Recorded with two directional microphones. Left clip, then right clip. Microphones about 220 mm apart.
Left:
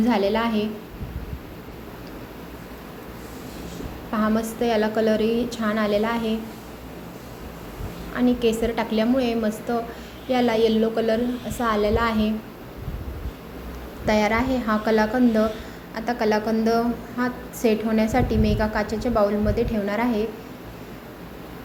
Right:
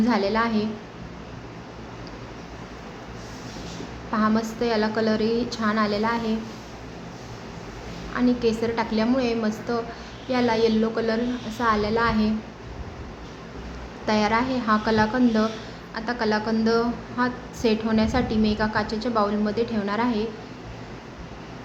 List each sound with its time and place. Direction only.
0.0 s a woman's voice: 5° left (ahead or behind)
4.1 s a woman's voice: 10° left (ahead or behind)
8.1 s a woman's voice: 10° left (ahead or behind)
14.1 s a woman's voice: 10° left (ahead or behind)